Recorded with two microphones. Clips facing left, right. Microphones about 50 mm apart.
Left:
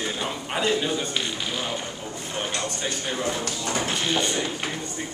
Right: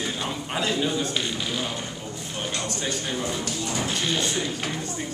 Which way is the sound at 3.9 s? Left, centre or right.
Centre.